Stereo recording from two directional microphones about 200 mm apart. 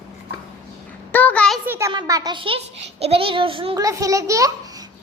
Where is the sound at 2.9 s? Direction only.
30° right (ahead or behind).